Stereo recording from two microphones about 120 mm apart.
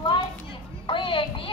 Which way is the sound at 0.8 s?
45° left (ahead or behind).